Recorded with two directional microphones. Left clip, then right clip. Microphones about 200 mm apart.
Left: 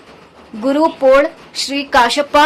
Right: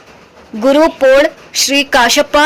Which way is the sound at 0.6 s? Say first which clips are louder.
Right 4 dB; 15° right (ahead or behind).